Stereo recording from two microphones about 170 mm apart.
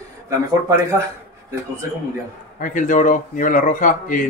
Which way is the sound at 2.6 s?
50° left (ahead or behind).